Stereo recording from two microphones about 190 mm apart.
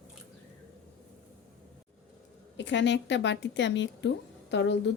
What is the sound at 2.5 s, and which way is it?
Speech, 70° left (ahead or behind).